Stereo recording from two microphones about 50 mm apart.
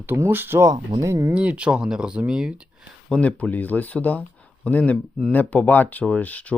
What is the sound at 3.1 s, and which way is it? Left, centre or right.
Speech, left.